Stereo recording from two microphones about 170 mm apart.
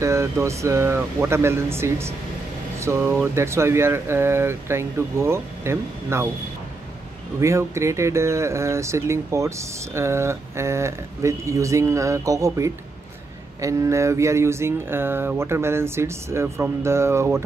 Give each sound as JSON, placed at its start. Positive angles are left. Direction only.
{"t": 0.0, "sound": "speech", "side_deg": -15}
{"t": 7.3, "sound": "speech", "side_deg": -15}